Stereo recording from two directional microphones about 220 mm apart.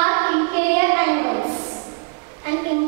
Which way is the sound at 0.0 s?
15° right (ahead or behind).